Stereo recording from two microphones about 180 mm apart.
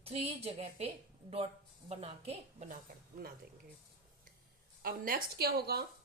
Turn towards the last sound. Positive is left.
turn(degrees=-60)  # may be behind; listen again after turning